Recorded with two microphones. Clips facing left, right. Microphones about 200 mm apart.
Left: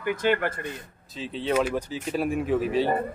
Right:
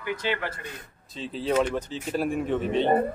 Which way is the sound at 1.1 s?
Centre (ahead or behind).